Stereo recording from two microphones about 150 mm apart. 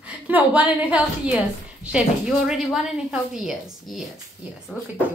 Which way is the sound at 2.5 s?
Centre (ahead or behind).